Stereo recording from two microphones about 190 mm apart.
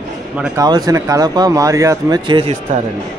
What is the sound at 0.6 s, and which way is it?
Speech, 20° right (ahead or behind).